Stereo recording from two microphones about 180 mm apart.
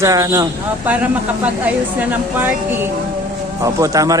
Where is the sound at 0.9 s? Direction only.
10° right (ahead or behind).